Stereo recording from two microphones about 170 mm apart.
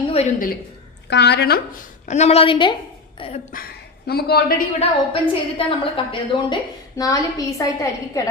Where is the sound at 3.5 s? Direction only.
60° left (ahead or behind).